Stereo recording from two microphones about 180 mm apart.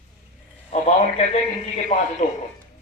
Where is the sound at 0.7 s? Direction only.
35° left (ahead or behind).